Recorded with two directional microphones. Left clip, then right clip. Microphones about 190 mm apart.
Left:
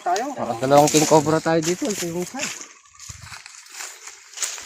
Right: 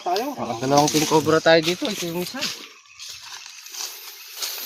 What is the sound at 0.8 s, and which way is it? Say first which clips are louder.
Speech: left 3 dB; 25° left (ahead or behind).